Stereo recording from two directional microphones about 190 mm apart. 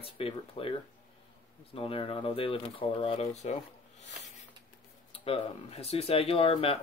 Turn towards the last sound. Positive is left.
turn(degrees=30)  # may be behind; listen again after turning